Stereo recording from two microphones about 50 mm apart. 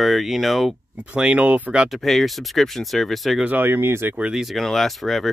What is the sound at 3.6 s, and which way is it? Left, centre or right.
Speech, right.